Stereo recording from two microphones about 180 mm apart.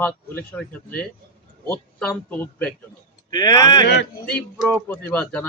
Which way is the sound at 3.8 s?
60° left (ahead or behind).